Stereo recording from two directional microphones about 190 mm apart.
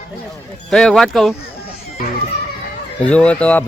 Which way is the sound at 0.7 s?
5° left (ahead or behind).